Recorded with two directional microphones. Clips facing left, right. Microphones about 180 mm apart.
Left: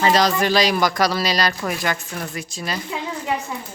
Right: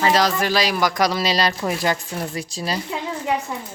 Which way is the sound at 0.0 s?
5° right (ahead or behind).